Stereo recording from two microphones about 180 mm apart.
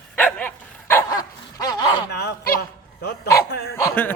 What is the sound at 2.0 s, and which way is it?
Honk, 65° left (ahead or behind).